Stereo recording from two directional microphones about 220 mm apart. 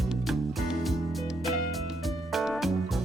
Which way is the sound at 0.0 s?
Centre (ahead or behind).